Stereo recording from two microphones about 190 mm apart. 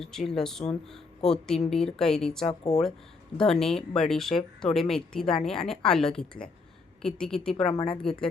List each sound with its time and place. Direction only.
0.0 s speech: centre (ahead or behind)
7.7 s a woman's voice: 20° left (ahead or behind)
8.0 s speech: 5° left (ahead or behind)